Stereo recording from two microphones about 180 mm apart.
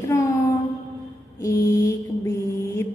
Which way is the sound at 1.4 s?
15° left (ahead or behind).